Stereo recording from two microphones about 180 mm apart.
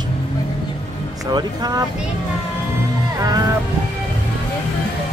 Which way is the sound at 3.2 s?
20° right (ahead or behind).